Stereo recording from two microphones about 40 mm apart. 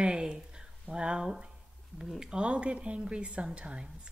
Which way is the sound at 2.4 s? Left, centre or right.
Right.